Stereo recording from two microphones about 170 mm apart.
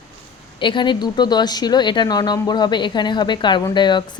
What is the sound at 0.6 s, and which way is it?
Speech, 30° left (ahead or behind).